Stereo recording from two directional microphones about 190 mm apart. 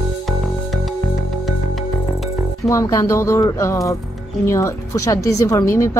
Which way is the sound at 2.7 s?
15° left (ahead or behind).